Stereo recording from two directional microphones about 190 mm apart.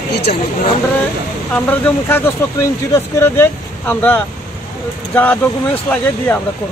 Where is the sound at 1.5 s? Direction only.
10° left (ahead or behind).